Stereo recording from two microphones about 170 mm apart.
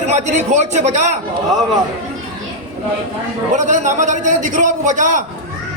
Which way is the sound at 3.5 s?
45° right (ahead or behind).